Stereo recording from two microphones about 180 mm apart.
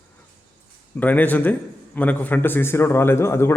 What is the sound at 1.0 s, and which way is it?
Speech, 10° left (ahead or behind).